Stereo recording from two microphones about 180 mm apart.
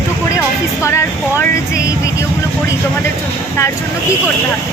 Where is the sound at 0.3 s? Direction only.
15° left (ahead or behind).